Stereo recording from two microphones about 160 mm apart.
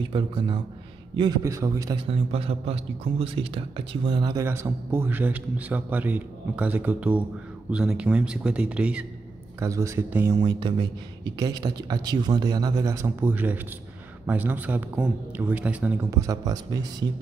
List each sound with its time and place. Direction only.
1.4 s speech: 20° right (ahead or behind)
2.0 s a man's voice: 35° right (ahead or behind)
4.5 s a man's voice: 15° right (ahead or behind)
9.6 s speech: 20° right (ahead or behind)
10.4 s a man's voice: 25° right (ahead or behind); by 16.1 s 10° right (ahead or behind)
16.1 s speech: 20° right (ahead or behind)